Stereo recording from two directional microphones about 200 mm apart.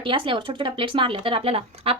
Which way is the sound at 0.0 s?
25° right (ahead or behind).